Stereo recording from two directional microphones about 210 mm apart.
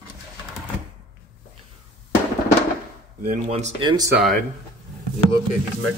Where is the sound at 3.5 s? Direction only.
30° right (ahead or behind).